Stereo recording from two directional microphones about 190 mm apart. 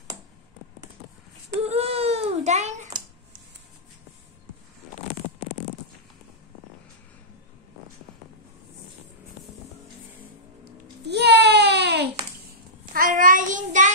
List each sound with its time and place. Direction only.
1.7 s baby cry: 30° right (ahead or behind)
10.6 s a sound: 60° right (ahead or behind)
12.9 s child singing: 45° right (ahead or behind)